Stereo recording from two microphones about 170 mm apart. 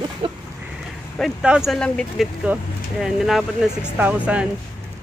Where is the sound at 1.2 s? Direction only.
5° right (ahead or behind).